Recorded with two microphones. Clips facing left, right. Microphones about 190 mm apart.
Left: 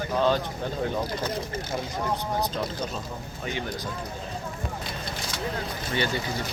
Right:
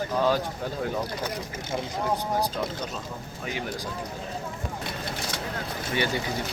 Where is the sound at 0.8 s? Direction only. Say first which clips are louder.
Left 2 dB; 10° right (ahead or behind).